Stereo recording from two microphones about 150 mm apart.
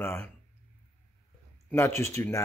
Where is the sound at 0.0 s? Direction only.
15° left (ahead or behind).